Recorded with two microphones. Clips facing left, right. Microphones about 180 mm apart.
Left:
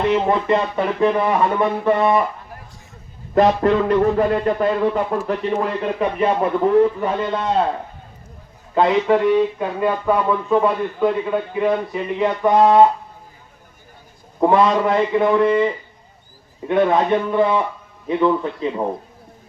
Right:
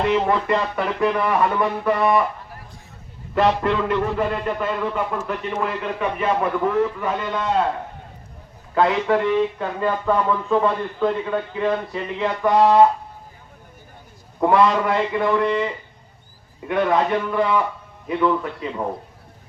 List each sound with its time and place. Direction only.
0.3 s speech: 20° left (ahead or behind)
3.3 s a man's voice: 40° left (ahead or behind)
8.7 s speech: 20° left (ahead or behind)
14.4 s speech: 20° left (ahead or behind)